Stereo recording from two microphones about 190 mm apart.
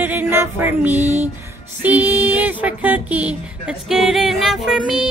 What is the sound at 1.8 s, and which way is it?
Speech, 10° right (ahead or behind).